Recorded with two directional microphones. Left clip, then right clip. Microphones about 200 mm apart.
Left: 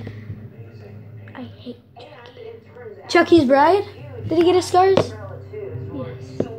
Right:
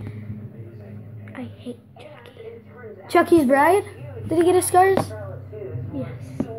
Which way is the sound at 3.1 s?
5° right (ahead or behind).